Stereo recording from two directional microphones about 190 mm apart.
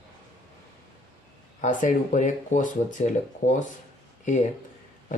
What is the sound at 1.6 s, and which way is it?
Speech, 40° left (ahead or behind).